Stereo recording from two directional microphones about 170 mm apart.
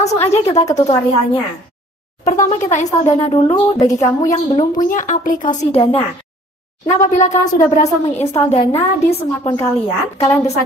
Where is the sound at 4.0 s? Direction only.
20° left (ahead or behind).